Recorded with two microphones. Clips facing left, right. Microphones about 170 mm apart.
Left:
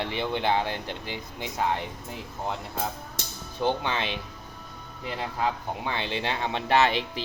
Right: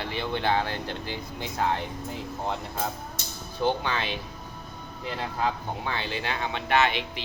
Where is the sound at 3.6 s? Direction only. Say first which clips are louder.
Even; 20° left (ahead or behind).